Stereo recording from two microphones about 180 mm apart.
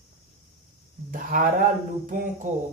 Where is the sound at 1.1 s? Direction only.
50° right (ahead or behind).